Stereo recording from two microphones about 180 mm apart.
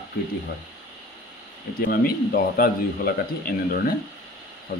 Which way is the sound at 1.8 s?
55° left (ahead or behind).